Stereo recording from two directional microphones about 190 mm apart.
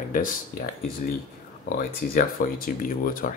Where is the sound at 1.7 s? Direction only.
50° left (ahead or behind).